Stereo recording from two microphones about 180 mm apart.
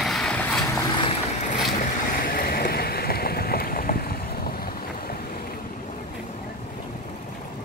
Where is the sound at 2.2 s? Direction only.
55° left (ahead or behind).